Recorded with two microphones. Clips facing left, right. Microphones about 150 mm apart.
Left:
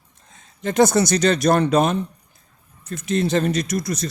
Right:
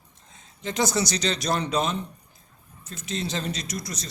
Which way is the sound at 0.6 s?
55° left (ahead or behind).